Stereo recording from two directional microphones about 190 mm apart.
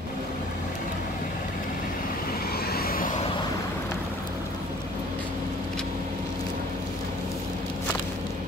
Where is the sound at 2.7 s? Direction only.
50° left (ahead or behind).